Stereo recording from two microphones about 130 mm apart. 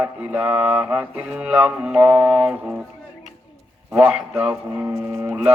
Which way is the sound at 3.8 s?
5° right (ahead or behind).